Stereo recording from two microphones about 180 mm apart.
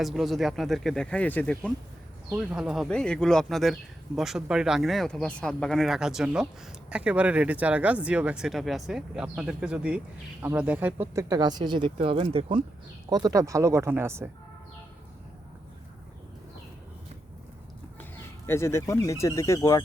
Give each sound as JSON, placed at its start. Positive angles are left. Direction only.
{"t": 0.0, "sound": "speech", "side_deg": 0}
{"t": 2.3, "sound": "speech", "side_deg": -5}
{"t": 18.4, "sound": "speech", "side_deg": 15}